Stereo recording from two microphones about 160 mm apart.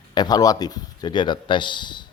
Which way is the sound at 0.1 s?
25° left (ahead or behind).